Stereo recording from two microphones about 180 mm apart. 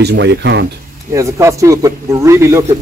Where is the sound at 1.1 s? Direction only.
15° right (ahead or behind).